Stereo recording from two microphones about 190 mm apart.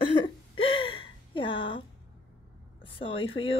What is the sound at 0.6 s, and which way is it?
Gasp, 30° left (ahead or behind).